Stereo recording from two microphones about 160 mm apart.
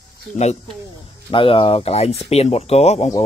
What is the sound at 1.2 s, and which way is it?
Speech, 35° left (ahead or behind).